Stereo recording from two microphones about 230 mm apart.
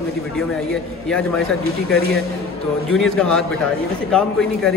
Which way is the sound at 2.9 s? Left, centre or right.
Centre.